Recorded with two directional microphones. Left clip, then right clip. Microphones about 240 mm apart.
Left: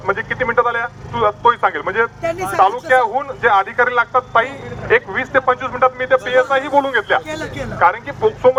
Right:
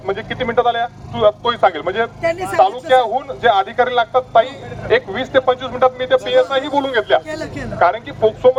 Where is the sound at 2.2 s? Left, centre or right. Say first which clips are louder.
Right 4 dB; right.